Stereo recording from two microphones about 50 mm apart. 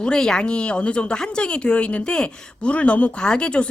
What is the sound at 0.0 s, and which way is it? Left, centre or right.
Speech, centre.